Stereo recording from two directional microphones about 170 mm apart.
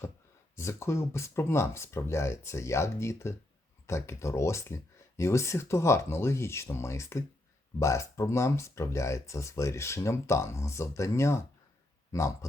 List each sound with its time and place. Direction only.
0.5 s speech: 15° left (ahead or behind)